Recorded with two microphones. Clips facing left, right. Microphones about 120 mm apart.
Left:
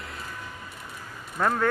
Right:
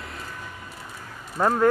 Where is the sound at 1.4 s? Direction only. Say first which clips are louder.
Right 3 dB; 20° right (ahead or behind).